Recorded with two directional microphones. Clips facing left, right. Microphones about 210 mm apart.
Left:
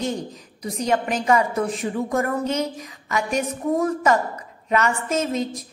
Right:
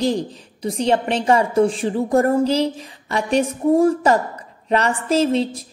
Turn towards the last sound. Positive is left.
turn(degrees=-30)  # may be behind; listen again after turning